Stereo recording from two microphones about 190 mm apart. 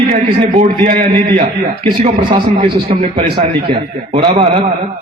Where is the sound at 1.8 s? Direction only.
25° right (ahead or behind).